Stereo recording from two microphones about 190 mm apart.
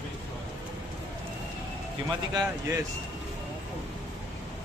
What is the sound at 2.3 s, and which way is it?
Speech, 15° right (ahead or behind).